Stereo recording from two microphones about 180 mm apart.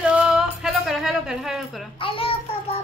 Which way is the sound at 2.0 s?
30° left (ahead or behind).